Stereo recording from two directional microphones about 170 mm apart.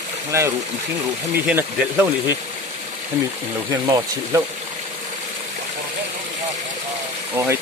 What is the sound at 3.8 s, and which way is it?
Speech, 20° right (ahead or behind).